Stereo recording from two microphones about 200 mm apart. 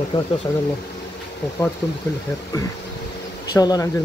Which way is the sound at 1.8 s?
15° left (ahead or behind).